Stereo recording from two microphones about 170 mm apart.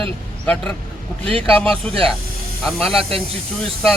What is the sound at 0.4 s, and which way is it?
Speech, 5° left (ahead or behind).